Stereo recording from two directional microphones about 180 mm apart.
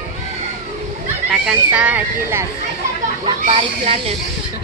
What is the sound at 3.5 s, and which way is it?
Speech, 30° right (ahead or behind).